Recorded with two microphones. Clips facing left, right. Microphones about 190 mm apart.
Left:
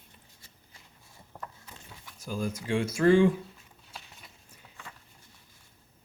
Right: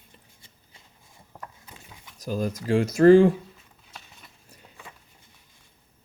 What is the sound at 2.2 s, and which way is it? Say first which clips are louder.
Speech: right 5 dB; 40° right (ahead or behind).